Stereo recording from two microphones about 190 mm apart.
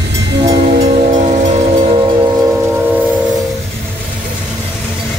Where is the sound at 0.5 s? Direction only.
35° right (ahead or behind).